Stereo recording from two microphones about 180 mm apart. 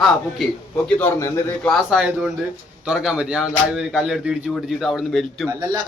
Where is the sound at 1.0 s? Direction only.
15° left (ahead or behind).